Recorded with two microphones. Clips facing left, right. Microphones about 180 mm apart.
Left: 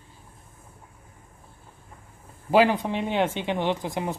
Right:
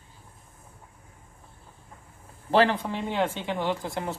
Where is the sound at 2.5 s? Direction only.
15° left (ahead or behind).